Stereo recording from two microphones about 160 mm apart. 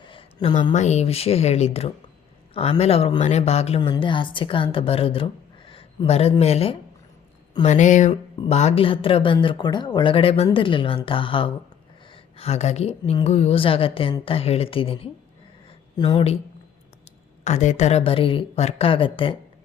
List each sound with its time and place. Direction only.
0.0 s a woman's voice: 30° left (ahead or behind)
17.4 s speech: 45° left (ahead or behind)